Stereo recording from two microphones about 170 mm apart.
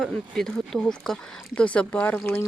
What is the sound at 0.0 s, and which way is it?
Speech, 5° left (ahead or behind).